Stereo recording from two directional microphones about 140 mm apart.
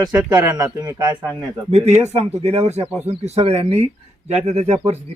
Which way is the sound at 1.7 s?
50° right (ahead or behind).